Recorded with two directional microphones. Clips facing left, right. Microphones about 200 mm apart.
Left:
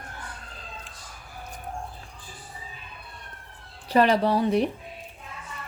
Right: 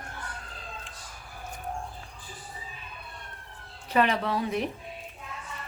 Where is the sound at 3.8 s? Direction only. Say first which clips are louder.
Left 5 dB; 35° left (ahead or behind).